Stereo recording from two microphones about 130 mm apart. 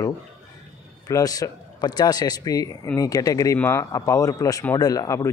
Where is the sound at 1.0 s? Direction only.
30° left (ahead or behind).